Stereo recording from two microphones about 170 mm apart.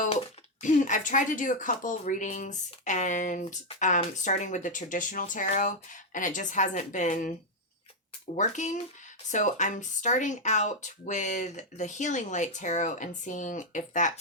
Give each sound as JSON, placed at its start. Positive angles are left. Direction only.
{"t": 0.6, "sound": "speech", "side_deg": 50}
{"t": 8.4, "sound": "speech", "side_deg": 45}